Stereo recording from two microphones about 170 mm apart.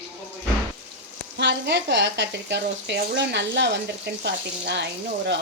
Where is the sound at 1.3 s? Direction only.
90° right.